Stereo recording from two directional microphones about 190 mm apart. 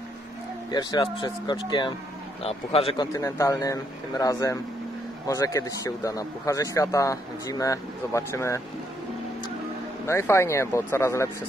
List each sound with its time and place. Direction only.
0.7 s a man's voice: 20° left (ahead or behind)
3.1 s speech: 15° left (ahead or behind)
10.0 s speech: 15° left (ahead or behind)